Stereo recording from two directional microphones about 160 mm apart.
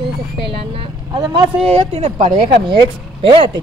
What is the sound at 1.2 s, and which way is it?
Speech, 35° right (ahead or behind).